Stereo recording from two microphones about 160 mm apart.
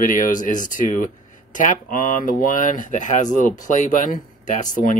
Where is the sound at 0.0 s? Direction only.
55° left (ahead or behind).